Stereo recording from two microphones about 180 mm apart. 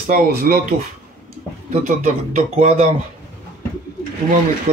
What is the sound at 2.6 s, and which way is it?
Speech, 35° right (ahead or behind).